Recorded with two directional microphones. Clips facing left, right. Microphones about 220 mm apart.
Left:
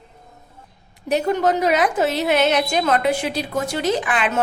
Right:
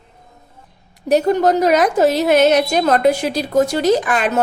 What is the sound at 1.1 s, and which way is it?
A woman's voice, 40° right (ahead or behind).